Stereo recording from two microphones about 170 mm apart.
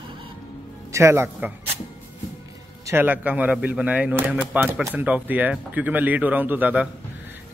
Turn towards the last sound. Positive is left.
turn(degrees=-10)  # may be behind; listen again after turning